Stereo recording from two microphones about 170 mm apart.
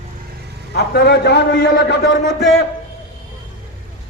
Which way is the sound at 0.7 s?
80° left.